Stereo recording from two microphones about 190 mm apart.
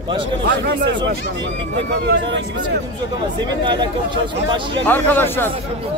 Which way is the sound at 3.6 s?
25° right (ahead or behind).